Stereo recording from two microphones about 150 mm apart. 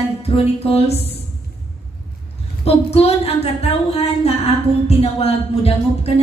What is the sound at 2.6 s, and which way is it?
Speech, 40° left (ahead or behind).